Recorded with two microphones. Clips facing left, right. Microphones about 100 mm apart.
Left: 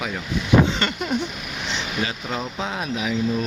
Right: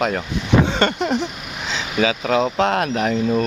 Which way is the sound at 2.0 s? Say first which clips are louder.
Right 13 dB; 85° right.